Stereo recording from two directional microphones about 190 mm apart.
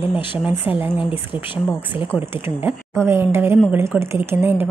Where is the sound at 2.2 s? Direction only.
10° right (ahead or behind).